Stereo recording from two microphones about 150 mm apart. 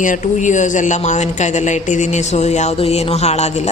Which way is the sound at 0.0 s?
55° left (ahead or behind).